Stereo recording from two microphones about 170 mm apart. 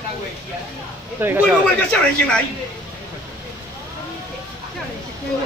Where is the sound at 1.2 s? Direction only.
10° right (ahead or behind).